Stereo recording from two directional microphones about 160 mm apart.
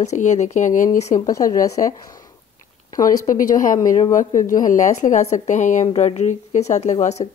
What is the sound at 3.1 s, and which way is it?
A woman's voice, 55° left (ahead or behind).